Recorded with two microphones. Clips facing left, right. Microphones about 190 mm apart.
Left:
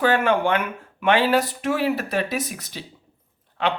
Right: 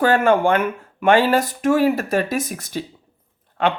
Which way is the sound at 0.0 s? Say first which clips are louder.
Right 4 dB; 45° right (ahead or behind).